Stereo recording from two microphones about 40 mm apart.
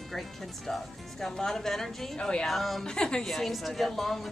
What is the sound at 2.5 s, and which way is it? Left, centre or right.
Speech, centre.